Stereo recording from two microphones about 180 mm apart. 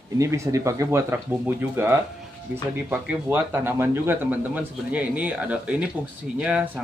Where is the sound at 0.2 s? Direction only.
15° right (ahead or behind).